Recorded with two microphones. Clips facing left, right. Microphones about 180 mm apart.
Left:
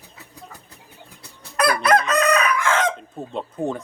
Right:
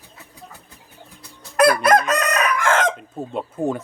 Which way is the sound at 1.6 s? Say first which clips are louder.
Right 3 dB; 45° right (ahead or behind).